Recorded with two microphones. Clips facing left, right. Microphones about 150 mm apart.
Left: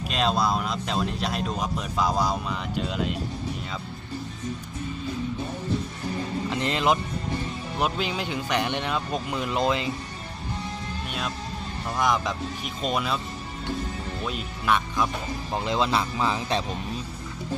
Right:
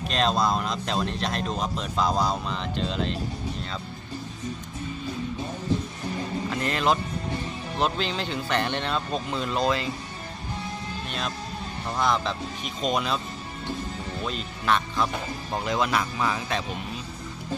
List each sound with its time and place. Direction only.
0.1 s speech: 5° left (ahead or behind)
6.5 s speech: 20° left (ahead or behind)
11.9 s speech: 10° left (ahead or behind)
14.3 s speech: 5° left (ahead or behind)
15.5 s speech: 20° left (ahead or behind)